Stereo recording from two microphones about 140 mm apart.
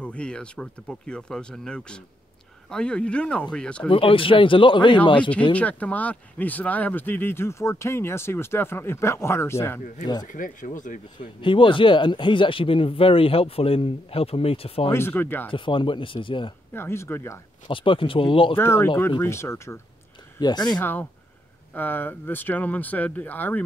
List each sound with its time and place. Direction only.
0.0 s speech: 10° left (ahead or behind)
3.9 s speech: 40° left (ahead or behind)
5.5 s speech: 10° left (ahead or behind)
10.2 s speech: 70° left (ahead or behind)
11.1 s speech: 35° left (ahead or behind)
14.9 s speech: 15° left (ahead or behind)
15.5 s speech: 35° left (ahead or behind)
16.7 s speech: 20° left (ahead or behind)
17.6 s speech: 40° left (ahead or behind)
18.6 s speech: 15° left (ahead or behind)
20.3 s speech: 30° left (ahead or behind)
20.8 s speech: 15° left (ahead or behind)